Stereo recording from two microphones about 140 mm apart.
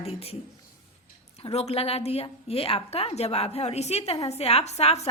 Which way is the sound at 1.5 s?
45° left (ahead or behind).